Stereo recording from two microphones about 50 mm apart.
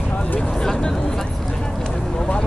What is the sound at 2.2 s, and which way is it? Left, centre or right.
Vehicle, centre.